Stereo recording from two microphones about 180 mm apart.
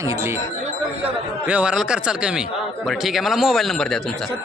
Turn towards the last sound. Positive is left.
turn(degrees=0)  # may be behind; listen again after turning